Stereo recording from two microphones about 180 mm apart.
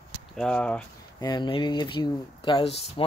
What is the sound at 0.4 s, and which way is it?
Speech, 5° left (ahead or behind).